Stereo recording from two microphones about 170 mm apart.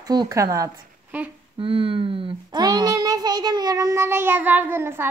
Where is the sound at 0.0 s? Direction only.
25° right (ahead or behind).